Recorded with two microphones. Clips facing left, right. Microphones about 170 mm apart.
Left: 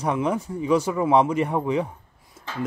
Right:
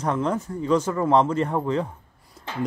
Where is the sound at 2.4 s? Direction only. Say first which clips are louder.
Right 1 dB; 5° left (ahead or behind).